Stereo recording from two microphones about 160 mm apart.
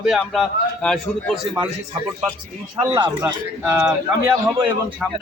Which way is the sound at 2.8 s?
25° right (ahead or behind).